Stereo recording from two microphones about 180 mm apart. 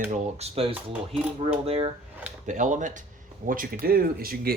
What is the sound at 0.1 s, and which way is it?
Speech, 35° right (ahead or behind).